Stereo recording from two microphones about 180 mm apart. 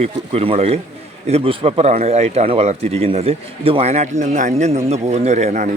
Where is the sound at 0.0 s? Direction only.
35° right (ahead or behind).